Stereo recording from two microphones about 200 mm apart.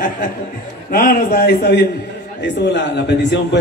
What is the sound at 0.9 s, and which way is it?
A man's voice, 50° left (ahead or behind).